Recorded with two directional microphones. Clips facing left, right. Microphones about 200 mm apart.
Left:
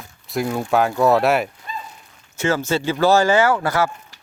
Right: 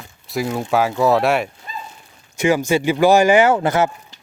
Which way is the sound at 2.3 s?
15° right (ahead or behind).